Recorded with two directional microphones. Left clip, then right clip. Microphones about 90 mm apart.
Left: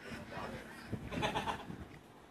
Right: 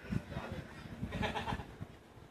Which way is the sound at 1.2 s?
20° left (ahead or behind).